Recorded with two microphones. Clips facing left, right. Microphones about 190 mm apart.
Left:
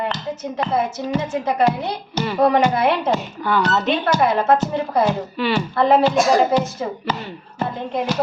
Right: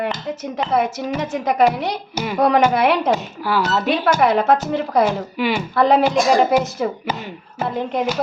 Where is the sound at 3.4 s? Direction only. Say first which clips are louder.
Even; 5° right (ahead or behind).